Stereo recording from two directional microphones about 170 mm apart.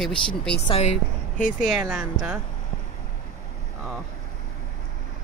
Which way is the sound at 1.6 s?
Centre (ahead or behind).